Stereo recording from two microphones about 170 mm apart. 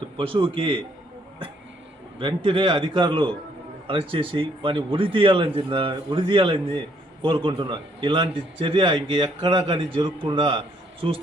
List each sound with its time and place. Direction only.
0.2 s a man's voice: 30° right (ahead or behind)
2.1 s a man's voice: 30° right (ahead or behind)